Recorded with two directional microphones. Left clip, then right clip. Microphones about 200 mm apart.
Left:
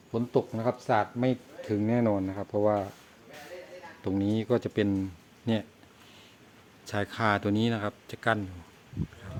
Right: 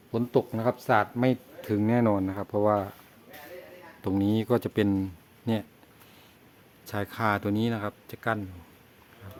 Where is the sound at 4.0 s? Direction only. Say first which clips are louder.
Right 2 dB; 15° right (ahead or behind).